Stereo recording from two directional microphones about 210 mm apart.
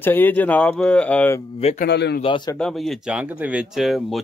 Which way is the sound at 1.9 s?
55° left (ahead or behind).